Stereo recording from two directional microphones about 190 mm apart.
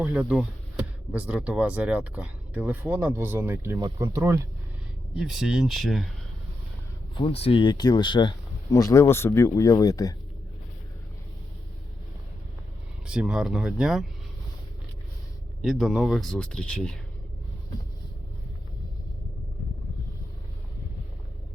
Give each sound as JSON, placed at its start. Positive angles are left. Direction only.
{"t": 0.0, "sound": "speech", "side_deg": -10}
{"t": 5.1, "sound": "speech", "side_deg": 0}
{"t": 7.2, "sound": "speech", "side_deg": 30}
{"t": 13.1, "sound": "speech", "side_deg": -5}
{"t": 15.6, "sound": "speech", "side_deg": 0}